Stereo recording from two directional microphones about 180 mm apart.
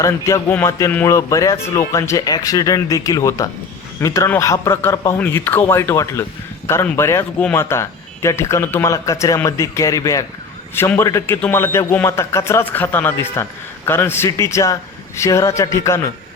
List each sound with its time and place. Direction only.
0.0 s a man's voice: 15° left (ahead or behind)